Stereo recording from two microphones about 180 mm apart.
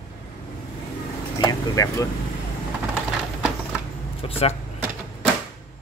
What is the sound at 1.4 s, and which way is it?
Speech, 20° left (ahead or behind).